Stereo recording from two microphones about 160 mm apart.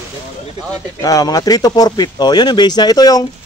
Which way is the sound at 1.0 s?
20° left (ahead or behind).